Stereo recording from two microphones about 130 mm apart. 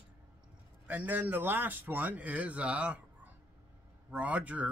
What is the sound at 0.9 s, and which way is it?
A man's voice, 15° right (ahead or behind).